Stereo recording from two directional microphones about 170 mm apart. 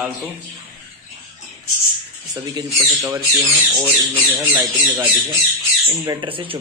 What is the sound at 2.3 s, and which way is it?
Speech, 20° right (ahead or behind).